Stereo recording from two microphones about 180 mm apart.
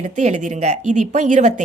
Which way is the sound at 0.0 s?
40° right (ahead or behind).